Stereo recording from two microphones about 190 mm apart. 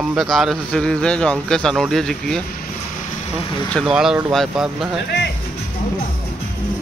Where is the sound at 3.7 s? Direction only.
Centre (ahead or behind).